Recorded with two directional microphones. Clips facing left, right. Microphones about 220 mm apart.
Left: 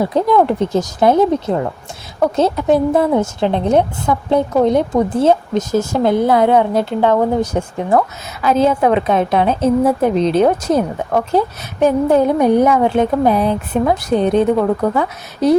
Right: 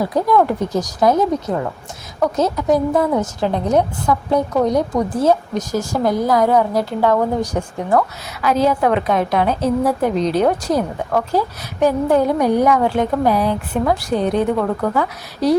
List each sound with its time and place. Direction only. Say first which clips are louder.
0.0 s a woman's voice: left 2 dB; 25° left (ahead or behind)